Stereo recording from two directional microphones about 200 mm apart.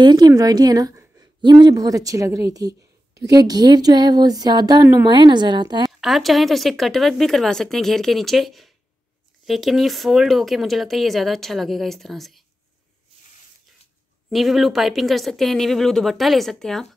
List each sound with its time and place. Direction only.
0.0 s a woman's voice: 20° right (ahead or behind)
5.9 s speech: centre (ahead or behind)
14.3 s speech: centre (ahead or behind)